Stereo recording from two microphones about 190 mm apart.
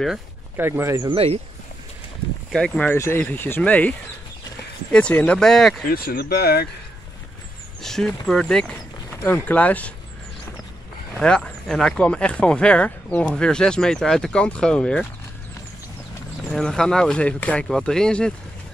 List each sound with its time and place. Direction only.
0.0 s speech: 5° right (ahead or behind)
1.1 s speech: 30° right (ahead or behind)
2.5 s speech: 5° left (ahead or behind)
4.9 s speech: 5° left (ahead or behind)
5.9 s speech: 50° left (ahead or behind)
7.8 s speech: centre (ahead or behind)
11.1 s speech: 5° left (ahead or behind)
16.4 s speech: 5° left (ahead or behind)